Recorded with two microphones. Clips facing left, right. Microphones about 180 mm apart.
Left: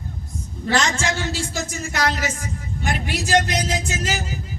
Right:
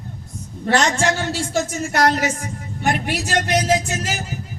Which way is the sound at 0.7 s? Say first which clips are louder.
Right 4 dB; 60° right (ahead or behind).